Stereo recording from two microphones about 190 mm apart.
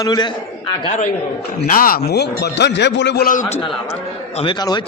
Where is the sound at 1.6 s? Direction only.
50° left (ahead or behind).